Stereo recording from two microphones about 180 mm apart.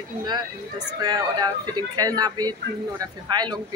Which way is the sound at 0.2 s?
25° right (ahead or behind).